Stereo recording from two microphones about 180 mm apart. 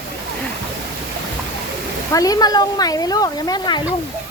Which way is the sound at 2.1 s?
20° left (ahead or behind).